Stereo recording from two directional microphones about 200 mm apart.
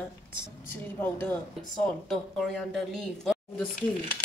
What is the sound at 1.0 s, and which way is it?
A woman's voice, 10° left (ahead or behind).